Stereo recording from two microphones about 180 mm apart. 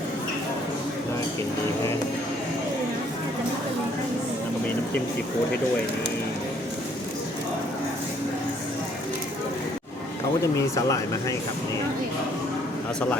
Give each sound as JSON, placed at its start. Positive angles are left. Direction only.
{"t": 10.8, "sound": "speech", "side_deg": 20}